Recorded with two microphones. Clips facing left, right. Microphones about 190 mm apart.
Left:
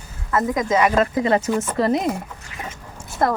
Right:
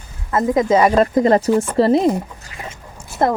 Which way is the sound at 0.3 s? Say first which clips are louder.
Right 5 dB; 25° right (ahead or behind).